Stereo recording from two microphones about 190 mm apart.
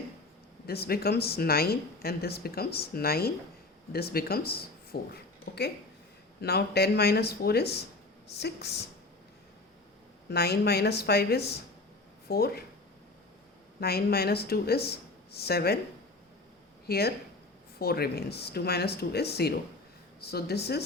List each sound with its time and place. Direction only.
0.7 s a woman's voice: 55° left (ahead or behind)
10.2 s a woman's voice: 55° left (ahead or behind)
13.7 s a woman's voice: 55° left (ahead or behind)
16.8 s a woman's voice: 55° left (ahead or behind)